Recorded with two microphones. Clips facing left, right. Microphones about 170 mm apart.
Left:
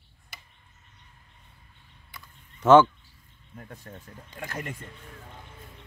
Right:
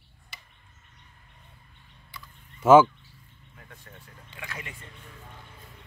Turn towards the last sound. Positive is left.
turn(degrees=45)  # may be behind; listen again after turning